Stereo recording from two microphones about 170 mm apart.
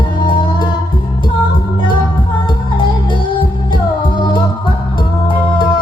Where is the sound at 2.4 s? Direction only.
30° left (ahead or behind).